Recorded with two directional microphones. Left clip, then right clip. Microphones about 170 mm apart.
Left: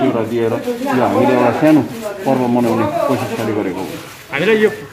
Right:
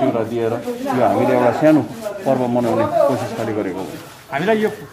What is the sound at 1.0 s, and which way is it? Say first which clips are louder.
Speech: left 1 dB; 20° right (ahead or behind).